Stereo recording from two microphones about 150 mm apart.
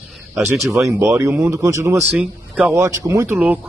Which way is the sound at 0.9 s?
20° right (ahead or behind).